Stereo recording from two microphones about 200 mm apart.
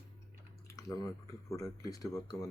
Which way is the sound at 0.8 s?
15° left (ahead or behind).